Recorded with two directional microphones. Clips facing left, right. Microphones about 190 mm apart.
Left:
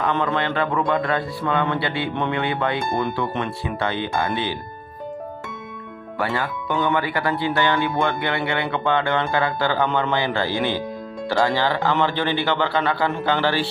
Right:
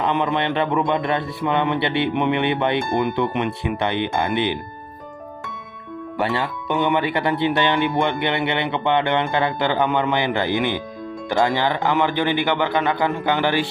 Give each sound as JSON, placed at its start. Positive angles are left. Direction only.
{"t": 0.0, "sound": "speech", "side_deg": -20}
{"t": 6.1, "sound": "speech", "side_deg": -20}